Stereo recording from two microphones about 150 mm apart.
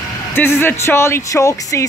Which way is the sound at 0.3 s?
15° left (ahead or behind).